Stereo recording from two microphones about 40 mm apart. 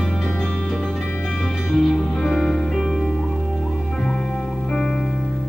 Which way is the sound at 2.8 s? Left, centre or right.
Centre.